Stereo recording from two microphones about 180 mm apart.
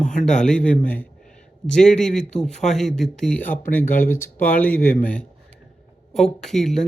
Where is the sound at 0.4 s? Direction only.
5° left (ahead or behind).